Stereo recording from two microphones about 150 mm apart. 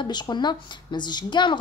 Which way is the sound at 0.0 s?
30° left (ahead or behind).